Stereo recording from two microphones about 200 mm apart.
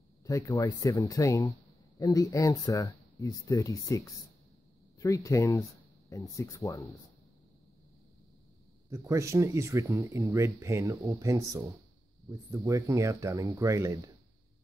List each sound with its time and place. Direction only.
0.2 s speech: 20° left (ahead or behind)
8.9 s speech: 15° right (ahead or behind)